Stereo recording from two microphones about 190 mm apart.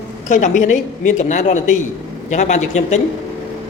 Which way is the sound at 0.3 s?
40° left (ahead or behind).